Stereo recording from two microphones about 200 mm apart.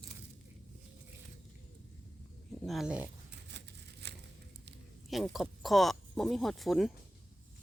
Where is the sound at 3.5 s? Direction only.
60° right (ahead or behind).